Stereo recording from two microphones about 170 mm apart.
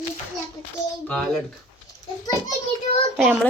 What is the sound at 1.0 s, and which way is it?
Speech, 5° left (ahead or behind).